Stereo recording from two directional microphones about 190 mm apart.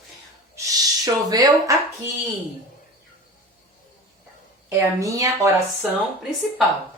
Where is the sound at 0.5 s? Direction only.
20° right (ahead or behind).